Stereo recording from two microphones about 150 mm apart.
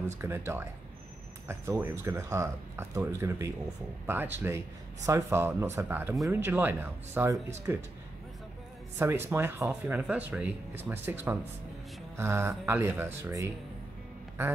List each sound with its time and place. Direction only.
0.2 s a man's voice: 15° right (ahead or behind)
8.9 s a man's voice: 15° right (ahead or behind)